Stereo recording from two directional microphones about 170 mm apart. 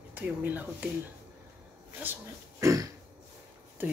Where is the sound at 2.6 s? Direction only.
20° right (ahead or behind).